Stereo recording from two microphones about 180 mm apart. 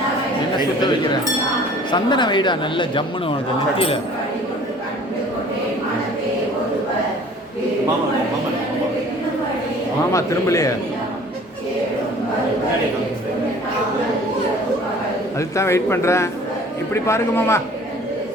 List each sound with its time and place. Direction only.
1.9 s speech: 25° left (ahead or behind)
10.1 s a man's voice: 15° left (ahead or behind)
15.4 s a man's voice: 15° left (ahead or behind)